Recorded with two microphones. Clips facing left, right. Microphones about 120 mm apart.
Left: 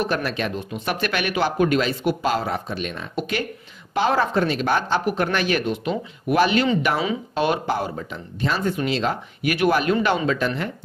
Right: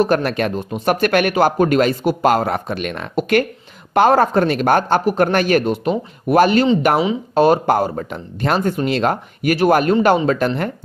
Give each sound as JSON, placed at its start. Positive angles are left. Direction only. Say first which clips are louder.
{"t": 0.0, "sound": "speech", "louder": "right 7 dB", "side_deg": -50}
{"t": 7.7, "sound": "speech", "louder": "right 7 dB", "side_deg": -50}